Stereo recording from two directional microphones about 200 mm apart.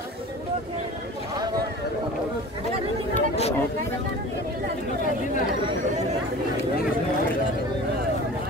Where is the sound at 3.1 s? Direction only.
30° left (ahead or behind).